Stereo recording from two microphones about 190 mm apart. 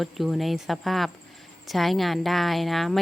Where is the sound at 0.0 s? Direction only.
Centre (ahead or behind).